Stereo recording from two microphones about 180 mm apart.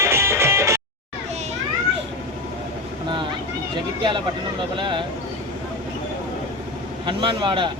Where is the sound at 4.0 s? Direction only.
25° right (ahead or behind).